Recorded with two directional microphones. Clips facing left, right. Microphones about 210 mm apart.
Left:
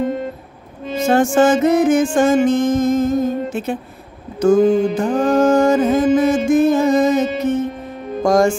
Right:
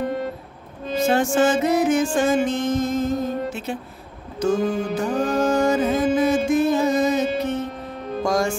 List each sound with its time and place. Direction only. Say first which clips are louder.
0.9 s music: left 5 dB; 50° left (ahead or behind)